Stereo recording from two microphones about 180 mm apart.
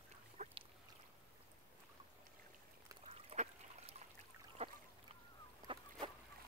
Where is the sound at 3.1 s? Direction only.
35° right (ahead or behind).